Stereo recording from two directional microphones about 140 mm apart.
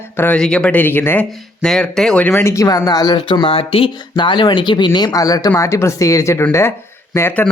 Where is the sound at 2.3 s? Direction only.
20° left (ahead or behind).